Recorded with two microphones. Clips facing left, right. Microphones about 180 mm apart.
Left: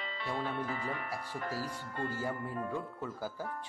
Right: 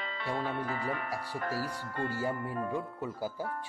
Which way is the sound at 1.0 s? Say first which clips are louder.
Right 3 dB; 90° right.